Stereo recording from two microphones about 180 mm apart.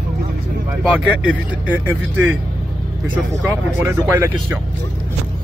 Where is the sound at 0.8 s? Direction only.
5° right (ahead or behind).